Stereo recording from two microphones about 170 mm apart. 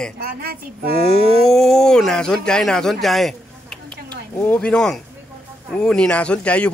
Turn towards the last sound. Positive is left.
turn(degrees=5)  # may be behind; listen again after turning